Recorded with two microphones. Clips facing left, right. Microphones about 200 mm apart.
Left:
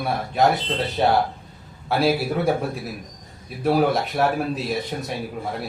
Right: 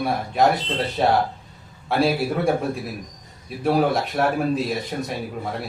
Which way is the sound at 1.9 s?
Centre (ahead or behind).